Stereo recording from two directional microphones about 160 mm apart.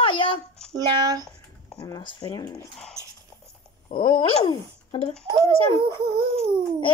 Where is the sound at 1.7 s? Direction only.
25° left (ahead or behind).